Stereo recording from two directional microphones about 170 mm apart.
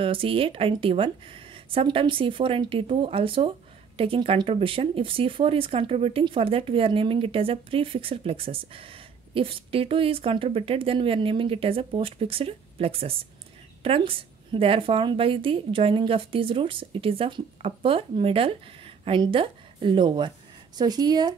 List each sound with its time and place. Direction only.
0.0 s a woman's voice: 30° right (ahead or behind)